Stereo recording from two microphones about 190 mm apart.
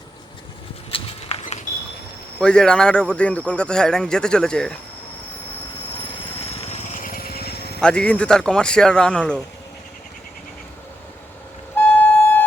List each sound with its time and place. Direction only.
0.9 s horse: 30° left (ahead or behind)
2.4 s a man's voice: 5° left (ahead or behind)
6.0 s a sound: 30° left (ahead or behind); by 7.8 s 60° left (ahead or behind)
7.8 s a man's voice: 5° left (ahead or behind)
11.8 s flute: 10° left (ahead or behind)